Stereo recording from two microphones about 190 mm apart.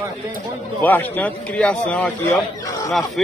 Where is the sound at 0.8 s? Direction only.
10° left (ahead or behind).